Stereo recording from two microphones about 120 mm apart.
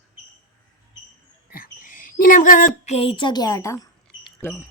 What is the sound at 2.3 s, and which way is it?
A woman's voice, 90° left.